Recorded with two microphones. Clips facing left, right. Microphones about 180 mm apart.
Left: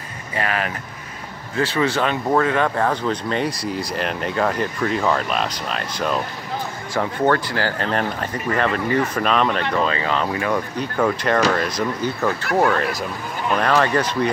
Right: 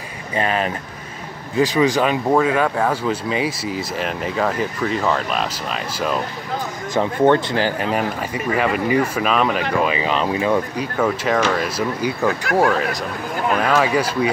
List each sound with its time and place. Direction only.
0.4 s speech: 25° right (ahead or behind)
1.6 s speech: 15° right (ahead or behind)
6.9 s speech: 20° right (ahead or behind)
10.8 s speech: 5° right (ahead or behind)